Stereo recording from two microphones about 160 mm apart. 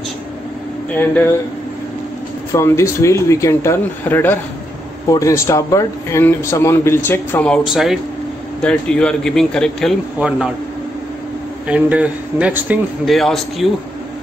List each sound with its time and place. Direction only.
2.5 s a man's voice: 15° left (ahead or behind)
10.1 s a man's voice: 5° right (ahead or behind)
11.6 s a man's voice: 10° right (ahead or behind)